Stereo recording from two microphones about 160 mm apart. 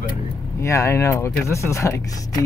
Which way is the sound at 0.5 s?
20° left (ahead or behind).